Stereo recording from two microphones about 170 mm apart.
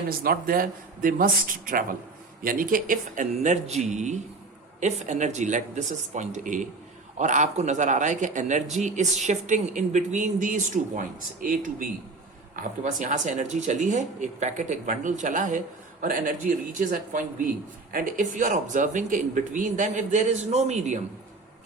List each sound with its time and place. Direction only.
0.1 s a man's voice: 60° right (ahead or behind); by 21.0 s 40° right (ahead or behind)